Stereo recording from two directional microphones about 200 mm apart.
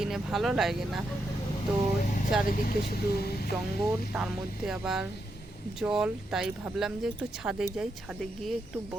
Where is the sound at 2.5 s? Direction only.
45° left (ahead or behind).